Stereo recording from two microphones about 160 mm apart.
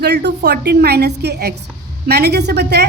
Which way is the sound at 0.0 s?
90° right.